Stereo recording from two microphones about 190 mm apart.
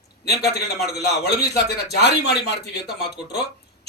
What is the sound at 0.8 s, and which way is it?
A man's voice, 60° left (ahead or behind).